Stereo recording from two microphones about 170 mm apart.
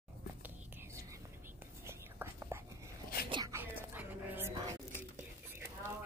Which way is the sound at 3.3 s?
25° right (ahead or behind).